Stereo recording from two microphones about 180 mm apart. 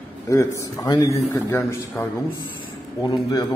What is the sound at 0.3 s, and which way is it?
A man's voice, 20° left (ahead or behind).